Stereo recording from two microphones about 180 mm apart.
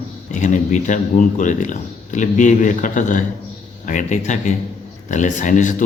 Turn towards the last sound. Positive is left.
turn(degrees=45)  # may be behind; listen again after turning